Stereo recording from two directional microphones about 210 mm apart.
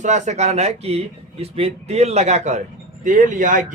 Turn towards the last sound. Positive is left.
turn(degrees=-35)  # may be behind; listen again after turning